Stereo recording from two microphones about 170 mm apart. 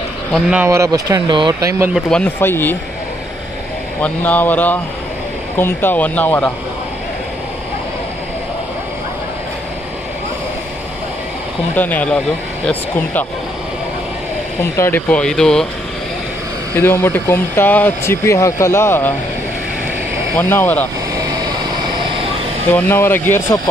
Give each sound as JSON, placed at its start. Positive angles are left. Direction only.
{"t": 0.3, "sound": "speech", "side_deg": -5}
{"t": 0.7, "sound": "speech", "side_deg": -20}
{"t": 2.0, "sound": "speech", "side_deg": 5}
{"t": 4.0, "sound": "speech", "side_deg": 10}
{"t": 11.7, "sound": "speech", "side_deg": 10}
{"t": 14.6, "sound": "speech", "side_deg": 15}
{"t": 16.7, "sound": "speech", "side_deg": 15}
{"t": 20.3, "sound": "speech", "side_deg": 10}
{"t": 22.7, "sound": "speech", "side_deg": 10}